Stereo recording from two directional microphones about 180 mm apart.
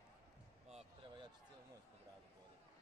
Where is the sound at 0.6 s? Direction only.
30° right (ahead or behind).